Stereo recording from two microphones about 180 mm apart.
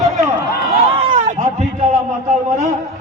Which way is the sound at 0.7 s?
30° right (ahead or behind).